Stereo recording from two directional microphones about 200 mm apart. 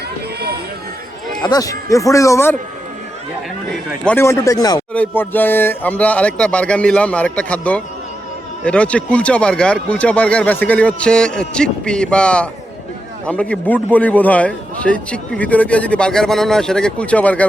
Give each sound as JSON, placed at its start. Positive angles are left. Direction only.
{"t": 0.3, "sound": "run", "side_deg": -50}
{"t": 1.4, "sound": "a man's voice", "side_deg": 20}
{"t": 4.0, "sound": "a man's voice", "side_deg": 10}